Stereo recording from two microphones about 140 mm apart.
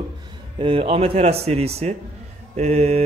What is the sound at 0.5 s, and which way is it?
Speech, 40° right (ahead or behind).